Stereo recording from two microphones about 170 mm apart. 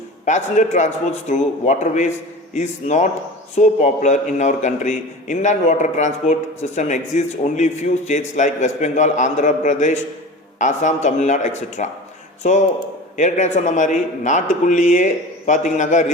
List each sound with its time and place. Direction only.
0.3 s a man's voice: 45° left (ahead or behind)